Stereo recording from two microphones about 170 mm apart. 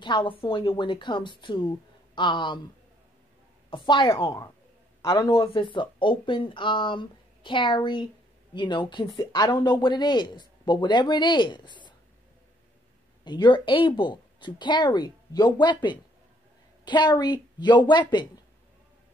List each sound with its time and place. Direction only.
0.0 s speech: 30° left (ahead or behind)
3.7 s speech: 30° left (ahead or behind)
13.2 s speech: 25° left (ahead or behind)